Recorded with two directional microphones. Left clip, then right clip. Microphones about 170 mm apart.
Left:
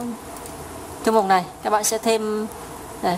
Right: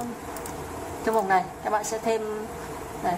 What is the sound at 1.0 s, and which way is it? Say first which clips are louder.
A woman's voice: left 5 dB; 25° left (ahead or behind).